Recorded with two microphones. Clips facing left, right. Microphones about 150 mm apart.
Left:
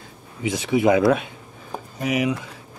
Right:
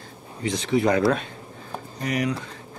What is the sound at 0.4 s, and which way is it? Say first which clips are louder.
Speech: left 2 dB; 10° left (ahead or behind).